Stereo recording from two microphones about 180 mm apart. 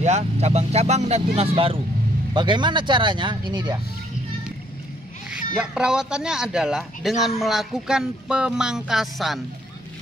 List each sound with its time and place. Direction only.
0.0 s speech: 40° right (ahead or behind); by 3.8 s 25° right (ahead or behind)
5.3 s speech: 5° right (ahead or behind)